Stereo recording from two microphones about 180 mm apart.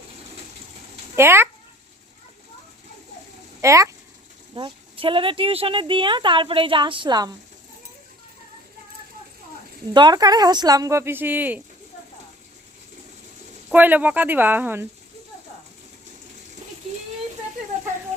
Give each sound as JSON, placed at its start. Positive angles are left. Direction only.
{"t": 1.1, "sound": "speech", "side_deg": -15}
{"t": 3.6, "sound": "speech", "side_deg": -15}
{"t": 4.5, "sound": "speech", "side_deg": -30}
{"t": 9.9, "sound": "speech", "side_deg": -25}
{"t": 13.7, "sound": "speech", "side_deg": -10}